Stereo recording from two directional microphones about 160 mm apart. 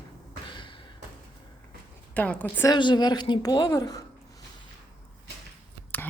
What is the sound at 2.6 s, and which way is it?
A woman's voice, 25° left (ahead or behind).